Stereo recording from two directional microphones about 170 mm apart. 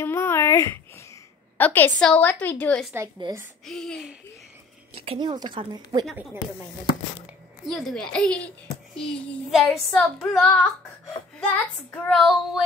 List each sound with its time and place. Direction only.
0.0 s a sound: 15° left (ahead or behind)
1.6 s a woman's voice: 10° left (ahead or behind)
3.2 s a woman's voice: 20° right (ahead or behind)
3.6 s speech: 5° left (ahead or behind)
4.9 s a woman's voice: 35° right (ahead or behind)
7.6 s a woman's voice: 5° left (ahead or behind)